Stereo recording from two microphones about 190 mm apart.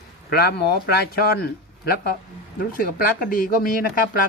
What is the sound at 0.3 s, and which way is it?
Speech, 55° left (ahead or behind).